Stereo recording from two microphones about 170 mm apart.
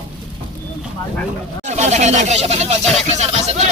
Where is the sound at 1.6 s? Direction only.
40° right (ahead or behind).